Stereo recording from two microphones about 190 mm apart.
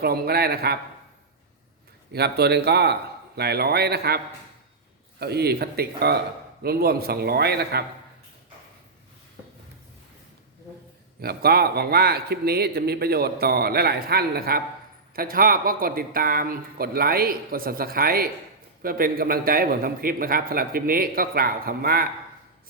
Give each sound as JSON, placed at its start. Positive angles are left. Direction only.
{"t": 0.0, "sound": "a man's voice", "side_deg": -55}
{"t": 2.1, "sound": "a man's voice", "side_deg": -60}
{"t": 5.2, "sound": "a man's voice", "side_deg": -55}
{"t": 11.2, "sound": "a man's voice", "side_deg": -55}